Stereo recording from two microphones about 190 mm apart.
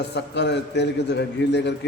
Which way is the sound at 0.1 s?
65° left (ahead or behind).